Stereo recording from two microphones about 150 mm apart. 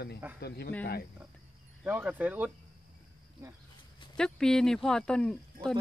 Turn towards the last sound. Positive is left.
turn(degrees=5)  # may be behind; listen again after turning